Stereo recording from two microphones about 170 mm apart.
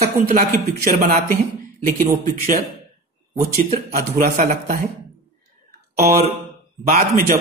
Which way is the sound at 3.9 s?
60° right (ahead or behind).